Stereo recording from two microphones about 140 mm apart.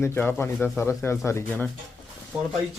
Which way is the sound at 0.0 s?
15° left (ahead or behind).